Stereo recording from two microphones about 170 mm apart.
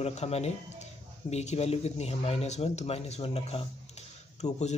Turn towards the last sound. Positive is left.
turn(degrees=40)  # may be behind; listen again after turning